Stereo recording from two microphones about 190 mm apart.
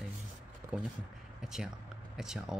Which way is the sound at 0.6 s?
15° right (ahead or behind).